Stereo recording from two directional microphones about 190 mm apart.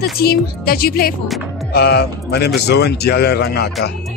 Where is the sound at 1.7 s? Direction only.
60° left (ahead or behind).